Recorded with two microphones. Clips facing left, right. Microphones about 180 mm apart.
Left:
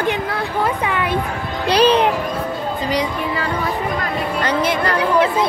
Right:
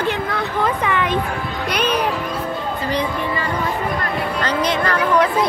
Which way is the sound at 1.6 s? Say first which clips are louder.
Left 7 dB; 30° left (ahead or behind).